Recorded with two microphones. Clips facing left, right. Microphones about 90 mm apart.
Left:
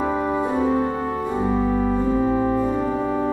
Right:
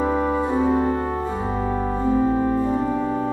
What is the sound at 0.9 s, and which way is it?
Music, 30° right (ahead or behind).